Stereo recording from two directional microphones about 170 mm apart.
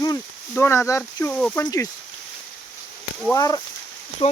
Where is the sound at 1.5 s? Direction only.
20° left (ahead or behind).